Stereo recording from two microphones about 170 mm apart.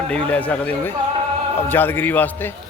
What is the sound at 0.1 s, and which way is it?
Speech, 10° left (ahead or behind).